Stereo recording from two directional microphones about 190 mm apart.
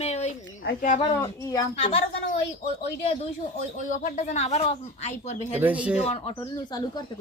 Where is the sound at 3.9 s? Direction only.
40° left (ahead or behind).